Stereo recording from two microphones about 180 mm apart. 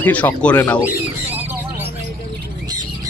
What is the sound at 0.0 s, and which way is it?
Speech, 10° left (ahead or behind).